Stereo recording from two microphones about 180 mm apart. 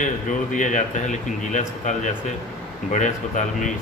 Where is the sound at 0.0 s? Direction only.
45° left (ahead or behind).